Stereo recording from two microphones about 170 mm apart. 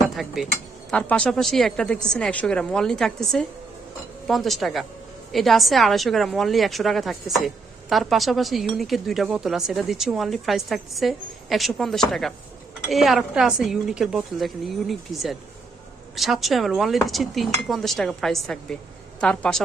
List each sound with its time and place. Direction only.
0.2 s a woman's voice: centre (ahead or behind)